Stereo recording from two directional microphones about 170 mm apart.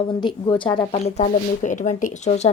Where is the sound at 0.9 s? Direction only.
40° left (ahead or behind).